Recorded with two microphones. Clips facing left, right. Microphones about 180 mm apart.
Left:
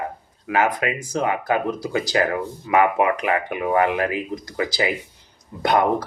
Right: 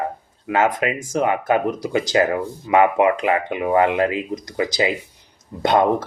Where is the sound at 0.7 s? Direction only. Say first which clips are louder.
Right 3 dB; 20° right (ahead or behind).